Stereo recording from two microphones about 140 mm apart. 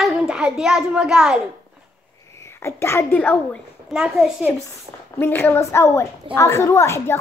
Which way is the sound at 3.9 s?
5° right (ahead or behind).